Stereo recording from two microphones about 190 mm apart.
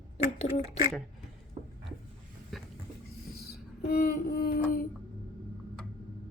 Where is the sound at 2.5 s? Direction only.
Centre (ahead or behind).